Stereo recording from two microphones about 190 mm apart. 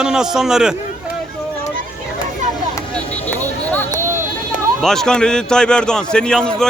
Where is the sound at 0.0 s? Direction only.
5° right (ahead or behind).